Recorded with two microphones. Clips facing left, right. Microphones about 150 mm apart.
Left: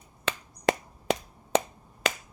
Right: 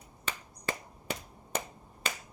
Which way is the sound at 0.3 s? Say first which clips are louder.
Left 10 dB; 80° left.